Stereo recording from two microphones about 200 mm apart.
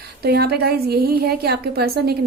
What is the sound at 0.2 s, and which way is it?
A woman's voice, 55° right (ahead or behind).